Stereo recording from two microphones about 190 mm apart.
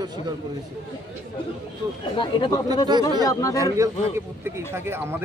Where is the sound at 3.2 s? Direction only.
15° left (ahead or behind).